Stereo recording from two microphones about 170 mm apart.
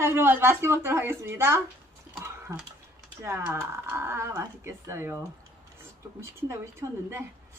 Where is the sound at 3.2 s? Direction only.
15° right (ahead or behind).